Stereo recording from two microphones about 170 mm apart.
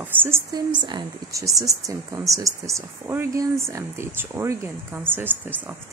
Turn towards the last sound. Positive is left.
turn(degrees=-10)  # may be behind; listen again after turning